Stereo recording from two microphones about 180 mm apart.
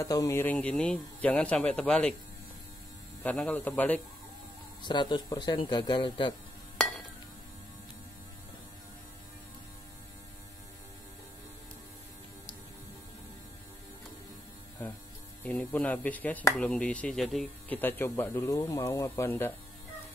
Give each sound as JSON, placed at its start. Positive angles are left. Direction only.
{"t": 0.0, "sound": "speech", "side_deg": 15}
{"t": 3.3, "sound": "speech", "side_deg": 5}
{"t": 4.8, "sound": "speech", "side_deg": 25}
{"t": 15.4, "sound": "speech", "side_deg": 5}